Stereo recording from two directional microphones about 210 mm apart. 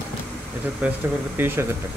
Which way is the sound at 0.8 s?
10° right (ahead or behind).